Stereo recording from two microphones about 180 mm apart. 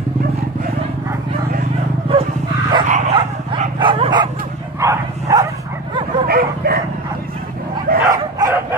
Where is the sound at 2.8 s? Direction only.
45° right (ahead or behind).